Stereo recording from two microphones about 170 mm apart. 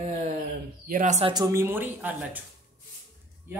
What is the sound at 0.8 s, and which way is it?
Speech, 50° right (ahead or behind).